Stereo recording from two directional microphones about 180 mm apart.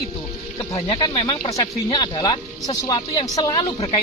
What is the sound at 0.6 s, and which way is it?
Speech, 25° left (ahead or behind).